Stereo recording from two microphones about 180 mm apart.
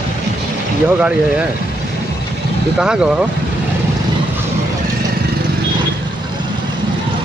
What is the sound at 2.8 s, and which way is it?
Speech, 5° right (ahead or behind).